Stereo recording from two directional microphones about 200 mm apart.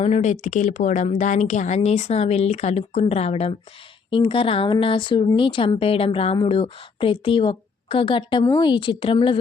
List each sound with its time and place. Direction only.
0.0 s a woman's voice: 30° left (ahead or behind)